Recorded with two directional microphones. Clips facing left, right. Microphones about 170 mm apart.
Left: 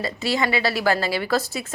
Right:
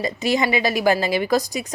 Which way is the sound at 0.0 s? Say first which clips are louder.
Right 3 dB; 20° right (ahead or behind).